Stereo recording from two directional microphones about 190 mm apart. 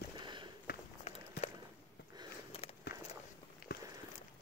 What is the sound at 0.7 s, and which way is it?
Run, 55° left (ahead or behind).